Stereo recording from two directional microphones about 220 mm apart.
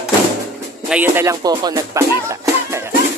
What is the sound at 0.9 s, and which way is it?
Music, 10° right (ahead or behind).